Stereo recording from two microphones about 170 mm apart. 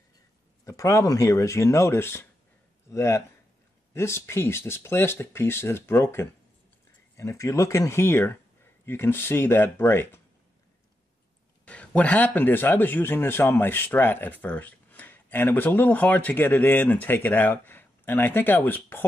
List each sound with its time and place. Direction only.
0.7 s speech: 20° left (ahead or behind)
11.6 s speech: 5° left (ahead or behind)